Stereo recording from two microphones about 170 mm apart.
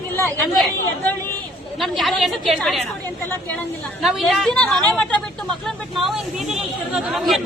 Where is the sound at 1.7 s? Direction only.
Centre (ahead or behind).